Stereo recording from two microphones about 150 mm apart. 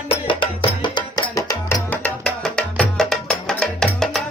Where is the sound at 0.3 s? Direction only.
30° left (ahead or behind).